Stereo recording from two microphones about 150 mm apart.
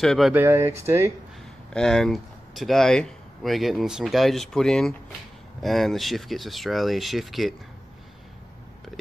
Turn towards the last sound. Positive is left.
turn(degrees=0)  # may be behind; listen again after turning